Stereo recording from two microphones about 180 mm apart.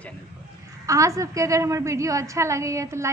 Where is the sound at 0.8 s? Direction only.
15° right (ahead or behind).